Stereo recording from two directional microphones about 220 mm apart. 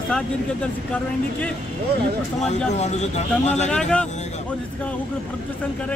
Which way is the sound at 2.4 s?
30° left (ahead or behind).